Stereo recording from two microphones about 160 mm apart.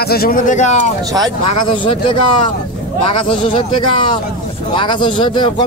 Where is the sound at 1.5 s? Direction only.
30° left (ahead or behind).